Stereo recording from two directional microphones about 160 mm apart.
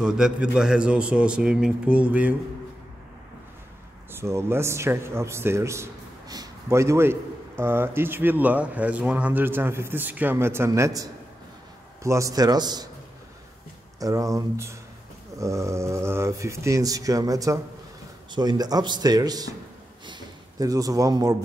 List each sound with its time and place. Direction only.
0.0 s a man's voice: 5° right (ahead or behind)
4.1 s a man's voice: 15° right (ahead or behind)
13.9 s speech: 20° right (ahead or behind)
20.1 s a sound: 20° right (ahead or behind)